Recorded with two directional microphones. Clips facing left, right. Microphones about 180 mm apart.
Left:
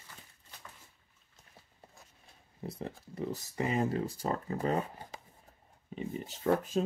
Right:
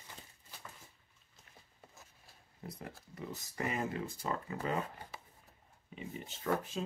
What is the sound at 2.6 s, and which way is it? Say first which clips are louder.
Speech: left 7 dB; 30° left (ahead or behind).